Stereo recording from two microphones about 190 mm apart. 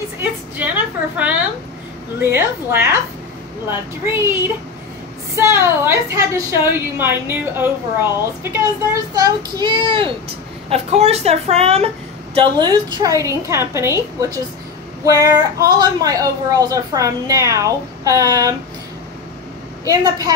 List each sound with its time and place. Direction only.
0.2 s a sound: 10° right (ahead or behind)
2.1 s a woman's voice: 10° right (ahead or behind); by 11.9 s 35° right (ahead or behind)
12.4 s a child's voice: 25° right (ahead or behind)
15.0 s a woman's voice: 20° right (ahead or behind)
19.9 s a child's voice: 20° right (ahead or behind)